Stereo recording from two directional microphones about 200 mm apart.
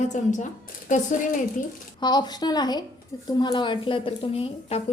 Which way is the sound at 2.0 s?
20° left (ahead or behind).